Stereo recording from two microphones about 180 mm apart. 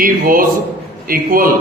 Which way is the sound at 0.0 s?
50° right (ahead or behind).